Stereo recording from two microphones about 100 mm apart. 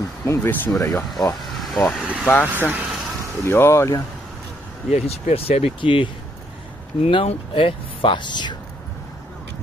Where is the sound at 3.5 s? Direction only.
25° left (ahead or behind).